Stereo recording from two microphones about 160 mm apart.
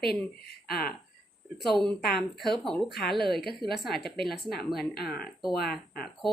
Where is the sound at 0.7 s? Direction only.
70° left (ahead or behind).